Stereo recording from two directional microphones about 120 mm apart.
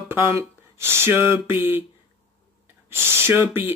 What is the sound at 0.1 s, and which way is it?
Speech, 25° right (ahead or behind).